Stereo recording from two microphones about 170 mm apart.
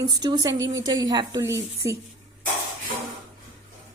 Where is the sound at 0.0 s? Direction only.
25° right (ahead or behind).